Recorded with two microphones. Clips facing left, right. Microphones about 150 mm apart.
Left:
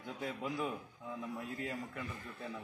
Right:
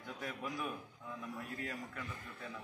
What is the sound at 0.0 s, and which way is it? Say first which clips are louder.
A man's voice: left 3 dB; 20° left (ahead or behind).